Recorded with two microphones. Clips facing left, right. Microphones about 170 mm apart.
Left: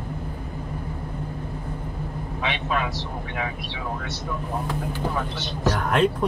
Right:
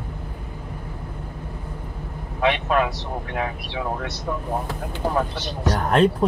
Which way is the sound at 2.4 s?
50° right (ahead or behind).